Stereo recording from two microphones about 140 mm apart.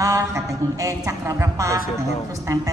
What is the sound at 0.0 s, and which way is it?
Mantra, 20° right (ahead or behind).